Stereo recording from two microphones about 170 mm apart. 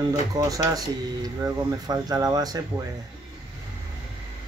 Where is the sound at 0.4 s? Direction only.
20° right (ahead or behind).